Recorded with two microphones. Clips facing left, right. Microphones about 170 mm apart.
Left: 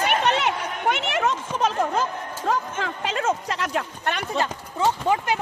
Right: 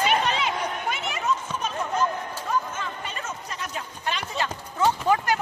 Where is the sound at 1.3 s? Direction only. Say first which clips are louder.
Left 3 dB; 90° left; by 4.3 s 60° left (ahead or behind).